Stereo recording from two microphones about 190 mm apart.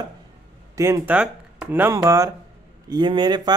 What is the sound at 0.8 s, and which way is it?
Speech, 10° right (ahead or behind).